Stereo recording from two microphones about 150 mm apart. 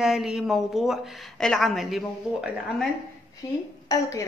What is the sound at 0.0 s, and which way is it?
A woman's voice, 5° right (ahead or behind).